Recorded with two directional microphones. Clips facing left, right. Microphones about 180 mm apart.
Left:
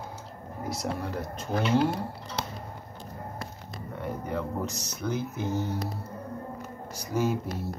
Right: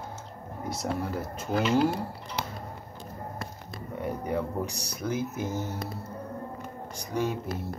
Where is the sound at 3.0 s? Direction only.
50° right (ahead or behind).